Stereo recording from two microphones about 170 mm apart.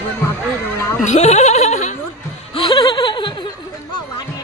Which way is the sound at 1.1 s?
40° left (ahead or behind).